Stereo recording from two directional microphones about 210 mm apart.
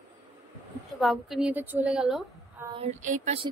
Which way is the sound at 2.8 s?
35° right (ahead or behind).